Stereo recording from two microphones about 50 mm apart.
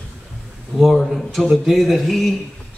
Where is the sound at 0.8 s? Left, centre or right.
Centre.